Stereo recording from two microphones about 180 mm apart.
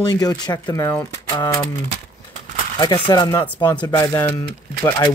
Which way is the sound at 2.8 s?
25° left (ahead or behind).